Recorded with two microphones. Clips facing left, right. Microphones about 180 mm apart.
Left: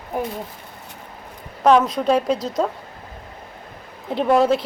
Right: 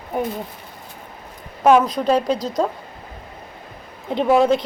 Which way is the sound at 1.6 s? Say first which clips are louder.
Right 1 dB; 10° right (ahead or behind).